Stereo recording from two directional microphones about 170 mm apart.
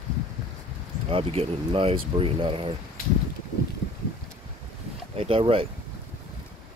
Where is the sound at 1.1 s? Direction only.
35° right (ahead or behind).